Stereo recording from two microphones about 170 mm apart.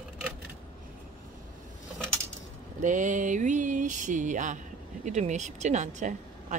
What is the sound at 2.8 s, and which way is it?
A woman's voice, 45° right (ahead or behind).